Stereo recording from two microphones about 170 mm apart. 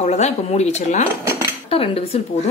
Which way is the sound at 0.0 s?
40° left (ahead or behind).